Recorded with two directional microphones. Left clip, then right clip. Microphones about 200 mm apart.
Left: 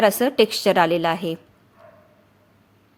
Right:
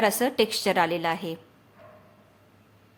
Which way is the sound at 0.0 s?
25° left (ahead or behind).